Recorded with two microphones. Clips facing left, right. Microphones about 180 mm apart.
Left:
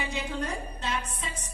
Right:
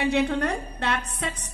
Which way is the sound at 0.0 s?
65° right (ahead or behind).